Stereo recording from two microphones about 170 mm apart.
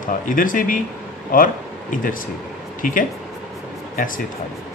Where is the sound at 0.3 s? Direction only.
50° left (ahead or behind).